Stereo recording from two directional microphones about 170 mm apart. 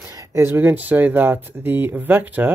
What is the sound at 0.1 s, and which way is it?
Speech, 15° right (ahead or behind).